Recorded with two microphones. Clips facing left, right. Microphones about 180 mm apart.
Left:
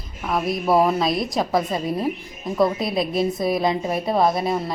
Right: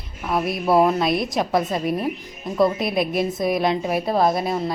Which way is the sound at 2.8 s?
25° left (ahead or behind).